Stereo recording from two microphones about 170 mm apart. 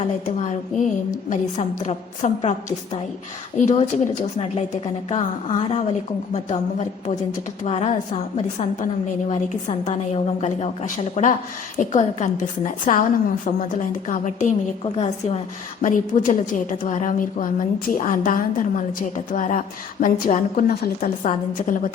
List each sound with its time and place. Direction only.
0.0 s a woman's voice: 40° left (ahead or behind); by 21.1 s 60° left (ahead or behind)
21.6 s a woman's voice: 50° left (ahead or behind)